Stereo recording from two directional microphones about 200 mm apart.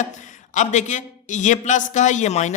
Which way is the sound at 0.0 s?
40° left (ahead or behind).